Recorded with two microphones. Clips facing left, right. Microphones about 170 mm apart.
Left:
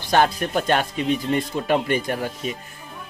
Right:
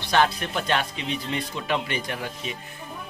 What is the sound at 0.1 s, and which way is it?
Speech, 45° left (ahead or behind).